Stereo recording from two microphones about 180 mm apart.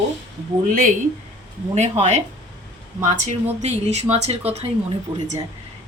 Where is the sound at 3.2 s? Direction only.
35° right (ahead or behind).